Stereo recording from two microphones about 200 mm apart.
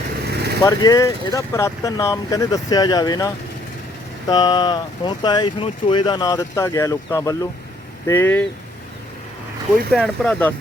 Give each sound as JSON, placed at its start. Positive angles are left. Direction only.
{"t": 0.3, "sound": "vehicle", "side_deg": -55}
{"t": 0.6, "sound": "speech", "side_deg": 20}
{"t": 9.9, "sound": "speech", "side_deg": 5}